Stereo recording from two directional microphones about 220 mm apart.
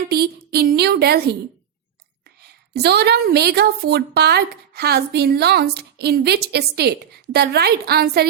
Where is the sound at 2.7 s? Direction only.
50° right (ahead or behind).